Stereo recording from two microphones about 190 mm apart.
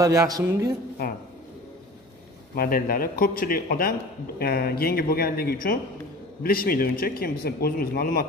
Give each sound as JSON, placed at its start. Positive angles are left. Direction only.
{"t": 0.0, "sound": "a man's voice", "side_deg": -15}
{"t": 2.5, "sound": "speech", "side_deg": 50}